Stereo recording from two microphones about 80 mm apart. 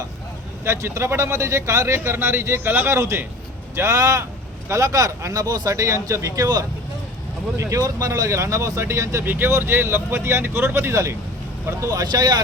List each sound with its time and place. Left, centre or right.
0.6 s speech: right
11.8 s speech: right